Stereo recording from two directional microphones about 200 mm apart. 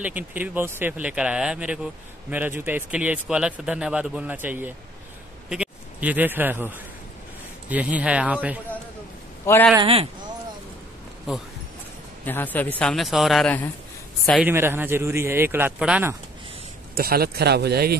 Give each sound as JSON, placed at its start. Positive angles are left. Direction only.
{"t": 0.0, "sound": "a man's voice", "side_deg": -10}
{"t": 9.5, "sound": "speech", "side_deg": 10}
{"t": 9.8, "sound": "speech", "side_deg": -25}
{"t": 12.3, "sound": "speech", "side_deg": 10}
{"t": 14.4, "sound": "speech", "side_deg": -10}
{"t": 16.9, "sound": "speech", "side_deg": -50}